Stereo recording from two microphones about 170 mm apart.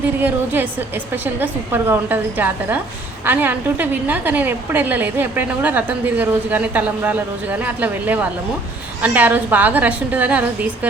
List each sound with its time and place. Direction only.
0.2 s a woman's voice: 10° right (ahead or behind)